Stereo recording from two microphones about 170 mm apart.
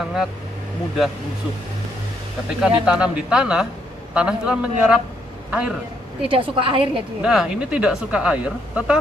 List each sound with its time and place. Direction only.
0.0 s speech: centre (ahead or behind)
2.6 s speech: 5° right (ahead or behind)
6.2 s a woman's voice: 30° right (ahead or behind)
7.2 s speech: 5° right (ahead or behind)